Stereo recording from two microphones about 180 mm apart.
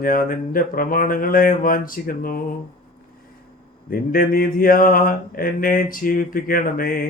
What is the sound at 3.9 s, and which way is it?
Mantra, 50° left (ahead or behind).